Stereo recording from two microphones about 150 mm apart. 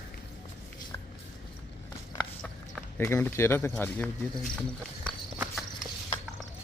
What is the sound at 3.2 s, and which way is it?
Speech, 15° left (ahead or behind).